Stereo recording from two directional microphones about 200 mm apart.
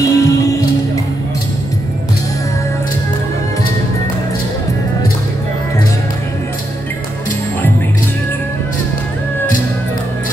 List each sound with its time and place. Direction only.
0.0 s music: 15° left (ahead or behind)